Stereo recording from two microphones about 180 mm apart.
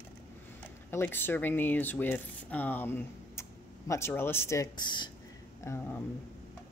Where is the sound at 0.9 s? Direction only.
10° left (ahead or behind).